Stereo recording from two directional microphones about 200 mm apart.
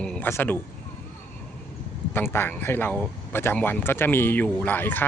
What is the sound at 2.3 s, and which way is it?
Speech, 10° left (ahead or behind).